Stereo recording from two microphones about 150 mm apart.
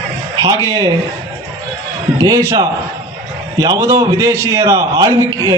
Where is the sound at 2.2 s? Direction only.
20° right (ahead or behind).